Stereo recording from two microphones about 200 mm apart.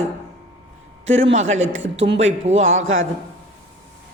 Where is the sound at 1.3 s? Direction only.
35° right (ahead or behind).